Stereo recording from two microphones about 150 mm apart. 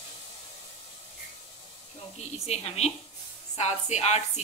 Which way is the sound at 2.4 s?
45° left (ahead or behind).